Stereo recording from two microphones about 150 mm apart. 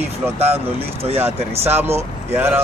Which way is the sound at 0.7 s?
40° right (ahead or behind).